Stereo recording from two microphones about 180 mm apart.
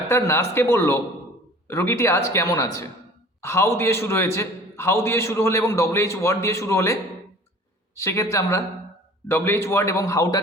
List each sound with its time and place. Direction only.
0.1 s a man's voice: 15° left (ahead or behind)